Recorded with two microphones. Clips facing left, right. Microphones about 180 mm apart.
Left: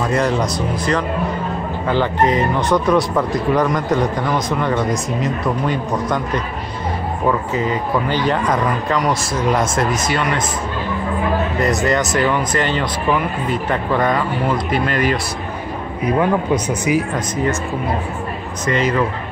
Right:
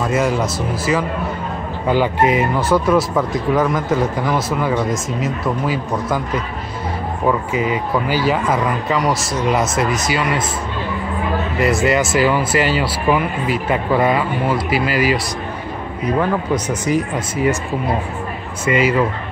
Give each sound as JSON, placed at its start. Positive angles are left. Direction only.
{"t": 0.0, "sound": "speech", "side_deg": -5}
{"t": 11.8, "sound": "speech", "side_deg": -5}
{"t": 16.5, "sound": "speech", "side_deg": 60}
{"t": 17.1, "sound": "speech", "side_deg": -10}
{"t": 18.7, "sound": "speech", "side_deg": -10}